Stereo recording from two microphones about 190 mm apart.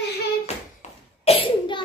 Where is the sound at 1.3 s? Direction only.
25° left (ahead or behind).